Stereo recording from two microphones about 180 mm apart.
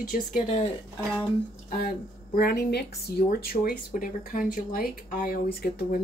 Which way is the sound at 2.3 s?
60° left (ahead or behind).